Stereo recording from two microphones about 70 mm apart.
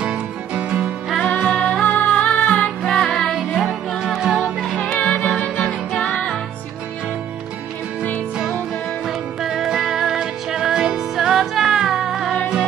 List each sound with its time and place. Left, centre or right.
0.0 s music: centre
1.3 s music: centre
4.9 s music: left
9.0 s music: centre